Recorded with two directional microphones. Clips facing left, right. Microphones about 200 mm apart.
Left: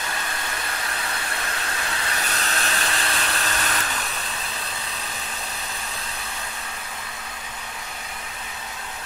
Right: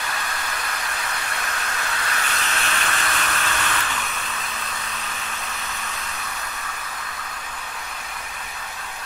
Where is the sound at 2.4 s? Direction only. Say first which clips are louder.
Even; 35° left (ahead or behind).